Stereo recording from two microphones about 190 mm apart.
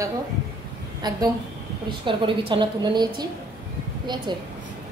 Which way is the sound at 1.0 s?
20° right (ahead or behind).